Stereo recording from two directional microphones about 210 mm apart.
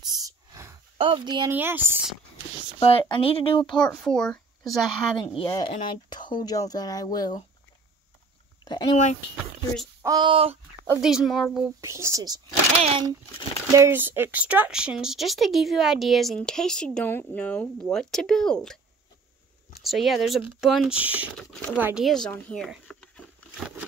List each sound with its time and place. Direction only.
0.0 s a sound: 20° right (ahead or behind)
0.9 s speech: 25° right (ahead or behind)
1.5 s speech: 10° right (ahead or behind)
2.8 s speech: 25° left (ahead or behind)
3.6 s speech: 5° left (ahead or behind)
5.4 s speech: 25° left (ahead or behind)
10.0 s speech: 20° right (ahead or behind)
10.9 s speech: 5° right (ahead or behind)
11.8 s speech: 15° right (ahead or behind)
13.7 s speech: 10° right (ahead or behind)
19.8 s speech: centre (ahead or behind)